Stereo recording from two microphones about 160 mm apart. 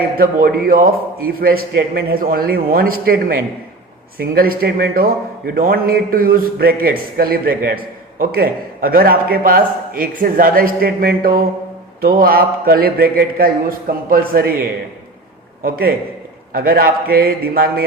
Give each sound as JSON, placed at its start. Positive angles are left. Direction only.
{"t": 0.2, "sound": "a man's voice", "side_deg": -65}